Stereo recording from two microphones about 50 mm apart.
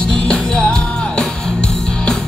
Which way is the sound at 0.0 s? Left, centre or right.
Centre.